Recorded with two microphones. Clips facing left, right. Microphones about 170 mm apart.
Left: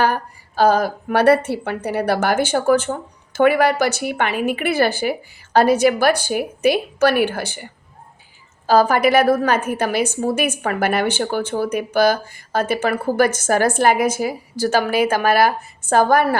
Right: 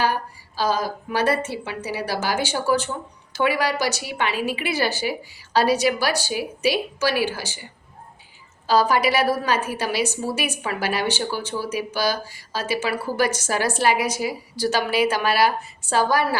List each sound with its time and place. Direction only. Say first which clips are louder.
0.0 s a woman's voice: left 4 dB; 55° left (ahead or behind)